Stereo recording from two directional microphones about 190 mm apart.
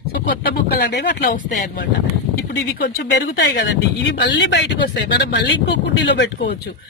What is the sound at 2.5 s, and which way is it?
Speech, 65° left (ahead or behind).